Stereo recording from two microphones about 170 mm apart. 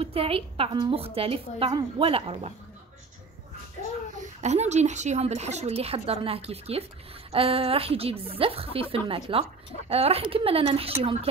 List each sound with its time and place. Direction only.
0.0 s speech: 35° right (ahead or behind)
4.2 s speech: 40° right (ahead or behind)